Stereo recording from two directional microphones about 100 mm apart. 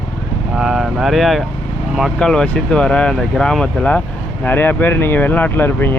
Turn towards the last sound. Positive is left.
turn(degrees=20)  # may be behind; listen again after turning